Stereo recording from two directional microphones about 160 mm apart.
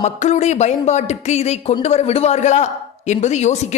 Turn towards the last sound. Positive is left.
turn(degrees=45)  # may be behind; listen again after turning